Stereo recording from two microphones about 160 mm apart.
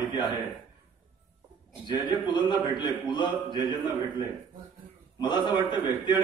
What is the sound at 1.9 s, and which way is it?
A man's voice, 30° left (ahead or behind).